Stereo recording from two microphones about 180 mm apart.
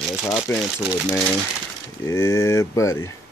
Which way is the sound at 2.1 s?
15° left (ahead or behind).